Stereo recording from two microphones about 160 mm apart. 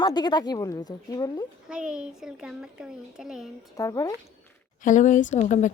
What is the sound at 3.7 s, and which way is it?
Speech, 20° left (ahead or behind).